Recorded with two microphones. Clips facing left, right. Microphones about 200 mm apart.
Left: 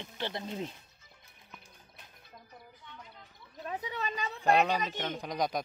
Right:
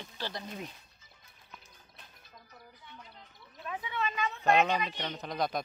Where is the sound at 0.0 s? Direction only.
20° left (ahead or behind).